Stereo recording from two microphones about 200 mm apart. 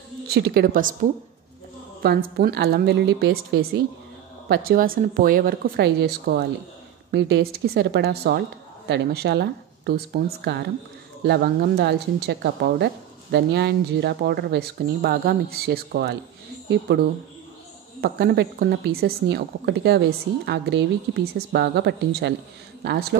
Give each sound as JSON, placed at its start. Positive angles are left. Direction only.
{"t": 0.3, "sound": "speech", "side_deg": -50}
{"t": 18.0, "sound": "speech", "side_deg": -50}